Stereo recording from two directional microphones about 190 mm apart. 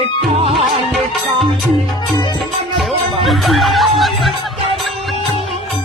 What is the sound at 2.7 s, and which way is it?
Music, centre (ahead or behind).